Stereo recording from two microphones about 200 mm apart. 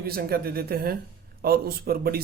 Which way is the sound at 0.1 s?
50° right (ahead or behind).